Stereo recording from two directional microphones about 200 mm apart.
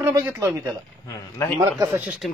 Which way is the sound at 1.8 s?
10° right (ahead or behind).